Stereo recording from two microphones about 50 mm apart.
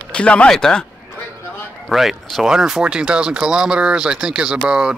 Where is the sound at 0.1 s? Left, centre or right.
Left.